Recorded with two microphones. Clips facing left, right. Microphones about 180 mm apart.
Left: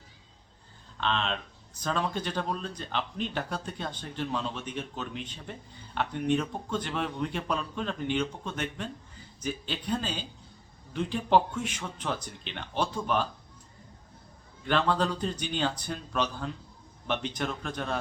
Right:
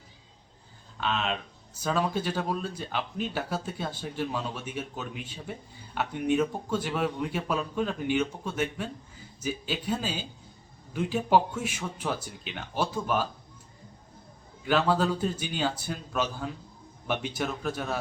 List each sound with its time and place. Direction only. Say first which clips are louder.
0.9 s speech: right 1 dB; 5° right (ahead or behind)
14.6 s speech: right 2 dB; 5° right (ahead or behind)